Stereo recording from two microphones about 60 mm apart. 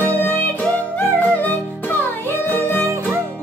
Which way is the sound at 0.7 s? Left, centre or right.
Left.